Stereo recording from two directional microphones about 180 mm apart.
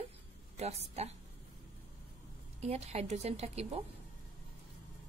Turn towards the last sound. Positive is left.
turn(degrees=-35)  # may be behind; listen again after turning